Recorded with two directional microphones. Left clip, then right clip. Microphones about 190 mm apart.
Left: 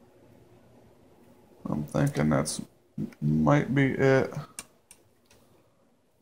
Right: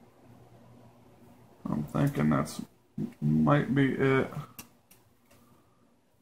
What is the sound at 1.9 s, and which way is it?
Speech, 30° left (ahead or behind).